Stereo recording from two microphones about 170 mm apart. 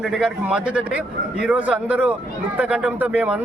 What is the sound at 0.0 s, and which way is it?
A man's voice, 5° right (ahead or behind).